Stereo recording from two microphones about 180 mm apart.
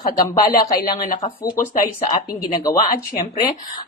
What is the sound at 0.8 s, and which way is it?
Speech, 50° left (ahead or behind).